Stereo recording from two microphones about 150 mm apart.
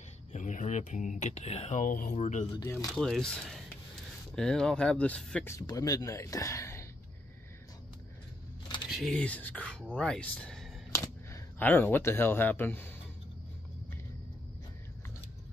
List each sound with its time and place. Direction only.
0.3 s speech: 55° left (ahead or behind)
2.6 s speech: 20° left (ahead or behind)
2.9 s speech: 5° left (ahead or behind); by 6.9 s 20° left (ahead or behind)
8.9 s speech: centre (ahead or behind)
10.9 s speech: 20° left (ahead or behind)